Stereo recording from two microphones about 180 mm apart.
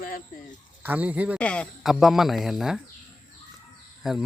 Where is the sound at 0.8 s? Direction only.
10° right (ahead or behind).